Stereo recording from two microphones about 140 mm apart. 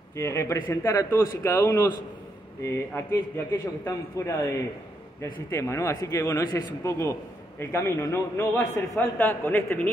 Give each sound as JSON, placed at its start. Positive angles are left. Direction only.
{"t": 0.1, "sound": "a man's voice", "side_deg": 20}